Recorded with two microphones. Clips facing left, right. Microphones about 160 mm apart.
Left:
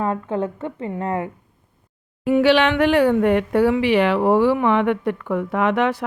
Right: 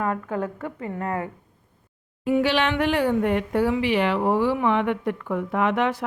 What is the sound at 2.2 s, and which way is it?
Speech, 75° left (ahead or behind).